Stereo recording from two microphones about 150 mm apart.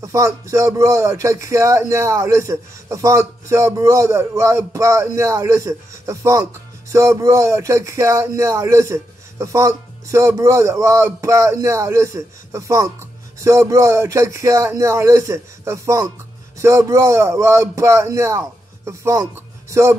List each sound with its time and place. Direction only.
0.0 s speech: 20° right (ahead or behind)